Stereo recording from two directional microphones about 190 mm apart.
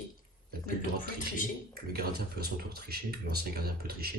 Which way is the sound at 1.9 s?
55° right (ahead or behind).